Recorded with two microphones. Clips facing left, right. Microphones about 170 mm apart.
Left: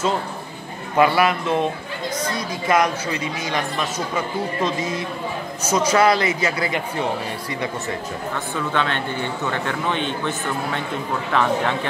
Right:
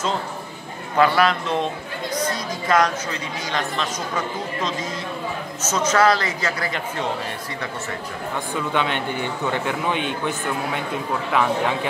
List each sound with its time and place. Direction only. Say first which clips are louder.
0.9 s a man's voice: left 1 dB; 10° left (ahead or behind)
2.7 s a man's voice: left 1 dB; 10° left (ahead or behind)
5.6 s a man's voice: left 1 dB; 10° left (ahead or behind)
8.7 s a man's voice: even; 15° right (ahead or behind)